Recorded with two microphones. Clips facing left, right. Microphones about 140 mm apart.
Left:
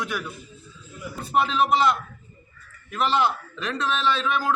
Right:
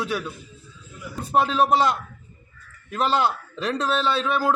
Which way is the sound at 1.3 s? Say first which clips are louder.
Right 2 dB; 40° right (ahead or behind).